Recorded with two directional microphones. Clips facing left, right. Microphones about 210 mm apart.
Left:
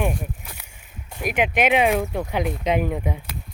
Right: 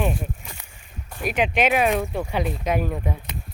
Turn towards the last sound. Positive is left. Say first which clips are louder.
# left 2 dB
turn(degrees=15)  # may be behind; listen again after turning